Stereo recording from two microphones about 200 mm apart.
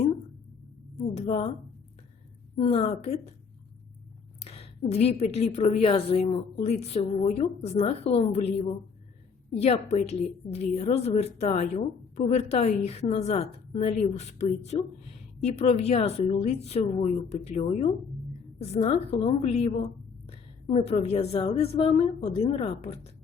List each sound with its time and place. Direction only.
1.1 s a sound: 30° left (ahead or behind)
2.6 s a woman's voice: 30° left (ahead or behind)
4.4 s a woman's voice: 30° left (ahead or behind)
20.7 s a woman's voice: 30° left (ahead or behind)